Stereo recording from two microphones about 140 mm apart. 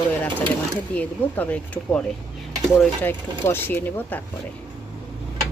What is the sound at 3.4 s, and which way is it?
Speech, 15° left (ahead or behind).